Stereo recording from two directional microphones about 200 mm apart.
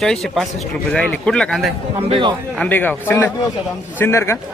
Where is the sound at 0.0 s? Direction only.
Centre (ahead or behind).